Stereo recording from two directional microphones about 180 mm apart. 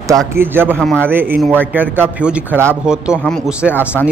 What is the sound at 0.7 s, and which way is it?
Speech, 5° left (ahead or behind).